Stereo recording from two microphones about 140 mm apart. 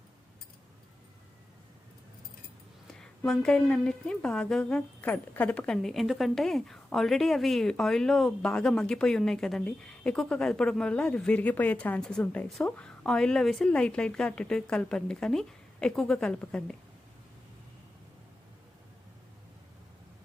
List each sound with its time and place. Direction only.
3.0 s a woman's voice: 5° left (ahead or behind)